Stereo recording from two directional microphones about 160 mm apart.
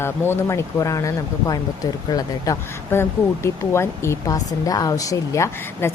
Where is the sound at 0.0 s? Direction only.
15° left (ahead or behind).